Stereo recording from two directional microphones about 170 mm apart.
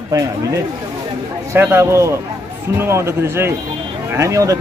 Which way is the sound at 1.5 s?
15° right (ahead or behind).